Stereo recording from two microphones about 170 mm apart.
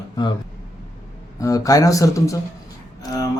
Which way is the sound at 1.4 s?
20° left (ahead or behind).